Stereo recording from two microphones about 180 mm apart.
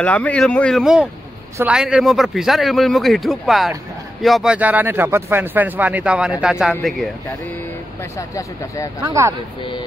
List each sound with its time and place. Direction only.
0.0 s speech: 5° left (ahead or behind)
8.0 s speech: 15° left (ahead or behind)
9.0 s speech: 15° right (ahead or behind)
9.6 s speech: 25° left (ahead or behind)